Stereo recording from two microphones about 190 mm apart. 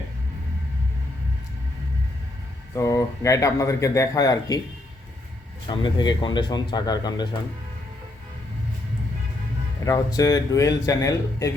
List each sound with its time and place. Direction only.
2.7 s a man's voice: 15° left (ahead or behind)
5.6 s speech: 25° left (ahead or behind)
9.8 s a man's voice: 20° left (ahead or behind)